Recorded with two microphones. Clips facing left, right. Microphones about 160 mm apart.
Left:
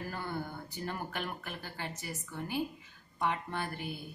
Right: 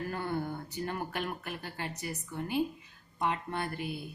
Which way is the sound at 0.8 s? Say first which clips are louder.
Right 2 dB; 15° right (ahead or behind).